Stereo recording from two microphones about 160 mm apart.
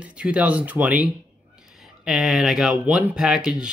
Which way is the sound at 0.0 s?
10° right (ahead or behind).